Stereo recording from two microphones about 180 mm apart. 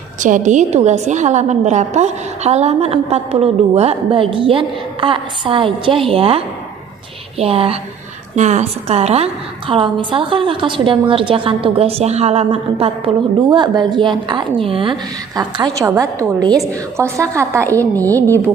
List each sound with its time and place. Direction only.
0.2 s a woman's voice: 45° right (ahead or behind); by 17.7 s 15° right (ahead or behind)